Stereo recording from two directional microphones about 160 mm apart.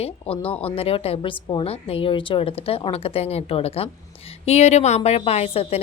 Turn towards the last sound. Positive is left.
turn(degrees=40)  # may be behind; listen again after turning